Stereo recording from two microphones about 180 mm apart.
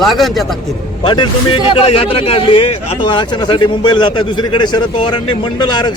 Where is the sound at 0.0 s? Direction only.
Centre (ahead or behind).